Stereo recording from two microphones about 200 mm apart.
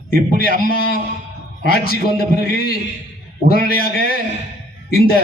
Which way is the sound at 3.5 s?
50° left (ahead or behind).